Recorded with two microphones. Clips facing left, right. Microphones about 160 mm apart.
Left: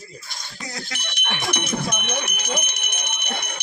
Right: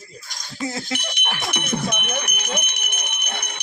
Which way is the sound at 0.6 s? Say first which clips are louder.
Right 8 dB; 25° right (ahead or behind).